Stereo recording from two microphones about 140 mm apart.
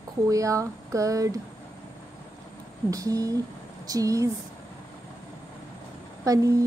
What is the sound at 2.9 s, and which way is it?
Speech, 25° right (ahead or behind).